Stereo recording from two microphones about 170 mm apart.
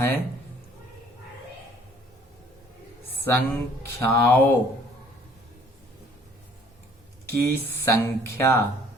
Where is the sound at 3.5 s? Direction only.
15° left (ahead or behind).